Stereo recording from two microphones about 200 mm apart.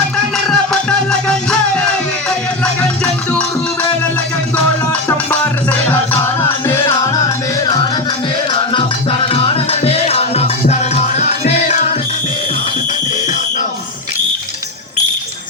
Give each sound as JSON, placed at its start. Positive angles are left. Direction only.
{"t": 0.4, "sound": "music", "side_deg": 5}
{"t": 4.5, "sound": "music", "side_deg": 5}
{"t": 6.2, "sound": "music", "side_deg": 15}